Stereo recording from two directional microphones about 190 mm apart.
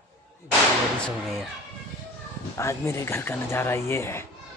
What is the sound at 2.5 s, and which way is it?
Speech, 15° left (ahead or behind).